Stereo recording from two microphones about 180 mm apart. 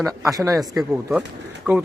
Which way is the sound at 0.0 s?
20° right (ahead or behind).